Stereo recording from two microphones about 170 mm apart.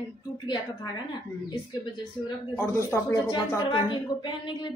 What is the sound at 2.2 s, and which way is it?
Speech, 15° left (ahead or behind).